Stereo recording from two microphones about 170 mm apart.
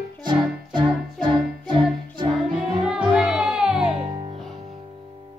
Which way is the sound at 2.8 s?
5° right (ahead or behind).